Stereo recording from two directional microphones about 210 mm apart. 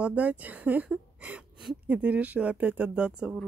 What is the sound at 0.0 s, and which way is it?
Speech, 5° right (ahead or behind).